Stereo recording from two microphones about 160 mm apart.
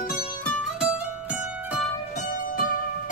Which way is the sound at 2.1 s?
60° left (ahead or behind).